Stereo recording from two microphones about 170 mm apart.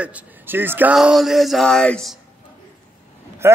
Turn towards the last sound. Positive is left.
turn(degrees=-15)  # may be behind; listen again after turning